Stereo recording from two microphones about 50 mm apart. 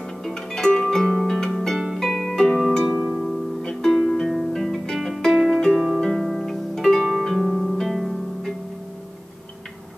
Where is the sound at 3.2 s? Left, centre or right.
Centre.